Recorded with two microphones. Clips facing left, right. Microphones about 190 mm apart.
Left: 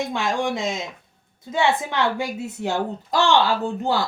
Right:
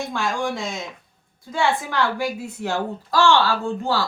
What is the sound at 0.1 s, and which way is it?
A woman's voice, 20° left (ahead or behind).